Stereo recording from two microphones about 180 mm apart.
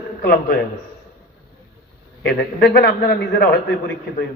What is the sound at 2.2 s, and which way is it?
A man's voice, 60° left (ahead or behind).